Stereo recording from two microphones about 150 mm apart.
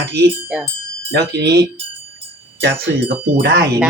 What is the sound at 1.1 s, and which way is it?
Speech, 90° right.